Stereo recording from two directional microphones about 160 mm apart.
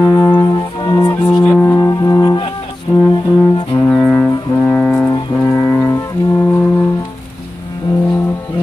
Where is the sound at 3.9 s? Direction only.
5° left (ahead or behind).